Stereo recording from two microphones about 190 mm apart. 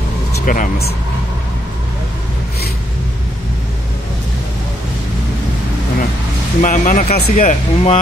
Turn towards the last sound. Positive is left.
turn(degrees=30)  # may be behind; listen again after turning